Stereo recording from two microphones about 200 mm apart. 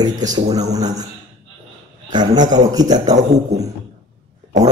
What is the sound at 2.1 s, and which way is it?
Speech, 20° right (ahead or behind).